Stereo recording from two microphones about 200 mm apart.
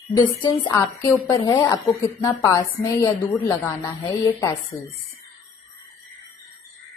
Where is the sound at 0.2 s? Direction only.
20° left (ahead or behind).